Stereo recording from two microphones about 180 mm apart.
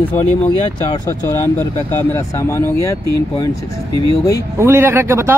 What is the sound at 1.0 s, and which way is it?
Speech, 20° left (ahead or behind).